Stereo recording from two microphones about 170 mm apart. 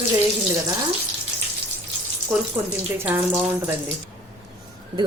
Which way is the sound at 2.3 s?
5° right (ahead or behind).